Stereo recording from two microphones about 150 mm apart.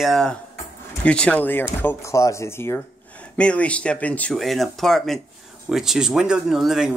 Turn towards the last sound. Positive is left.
turn(degrees=0)  # may be behind; listen again after turning